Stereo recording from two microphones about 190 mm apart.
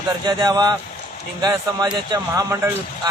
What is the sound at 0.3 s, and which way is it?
Speech, 20° right (ahead or behind).